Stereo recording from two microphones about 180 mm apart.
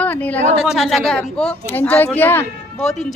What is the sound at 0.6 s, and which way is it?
A woman's voice, centre (ahead or behind).